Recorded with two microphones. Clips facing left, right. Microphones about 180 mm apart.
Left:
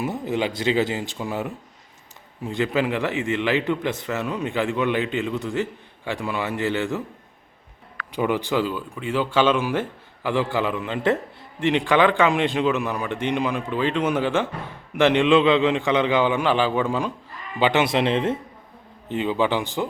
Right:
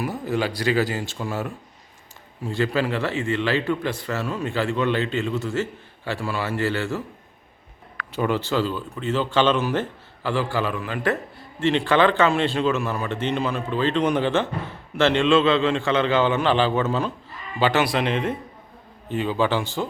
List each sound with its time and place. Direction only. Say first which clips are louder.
0.0 s a man's voice: even; 20° left (ahead or behind)
8.1 s a man's voice: left 1 dB; 15° left (ahead or behind)